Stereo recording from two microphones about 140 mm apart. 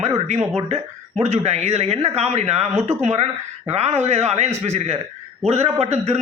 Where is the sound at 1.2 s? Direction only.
50° right (ahead or behind).